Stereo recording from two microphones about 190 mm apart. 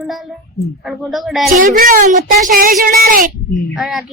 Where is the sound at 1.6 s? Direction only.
45° right (ahead or behind).